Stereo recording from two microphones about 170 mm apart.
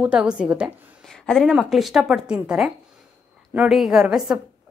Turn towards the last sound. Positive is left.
turn(degrees=0)  # may be behind; listen again after turning